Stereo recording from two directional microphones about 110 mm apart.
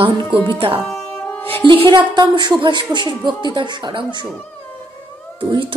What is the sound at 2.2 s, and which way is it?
Speech, 40° right (ahead or behind).